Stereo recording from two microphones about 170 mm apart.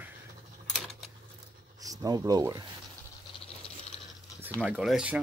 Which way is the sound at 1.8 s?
20° right (ahead or behind).